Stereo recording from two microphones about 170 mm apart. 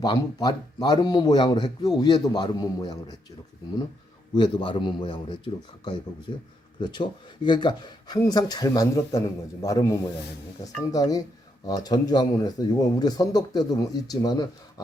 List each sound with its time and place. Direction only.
0.0 s speech: 25° left (ahead or behind)
4.4 s speech: 25° left (ahead or behind)
6.7 s speech: 25° left (ahead or behind)